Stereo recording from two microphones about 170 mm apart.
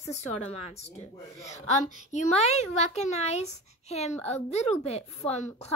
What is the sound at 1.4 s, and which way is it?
A woman's voice, 40° left (ahead or behind).